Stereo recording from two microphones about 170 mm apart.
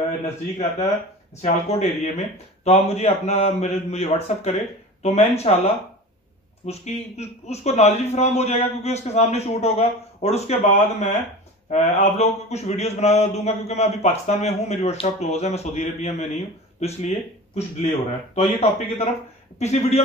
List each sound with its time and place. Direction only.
1.4 s a man's voice: 40° left (ahead or behind)
17.6 s a man's voice: 40° left (ahead or behind)